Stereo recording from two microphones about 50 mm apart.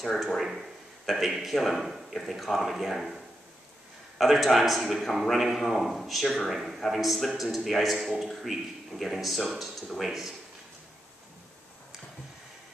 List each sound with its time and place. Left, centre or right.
0.0 s speech: centre
4.2 s speech: centre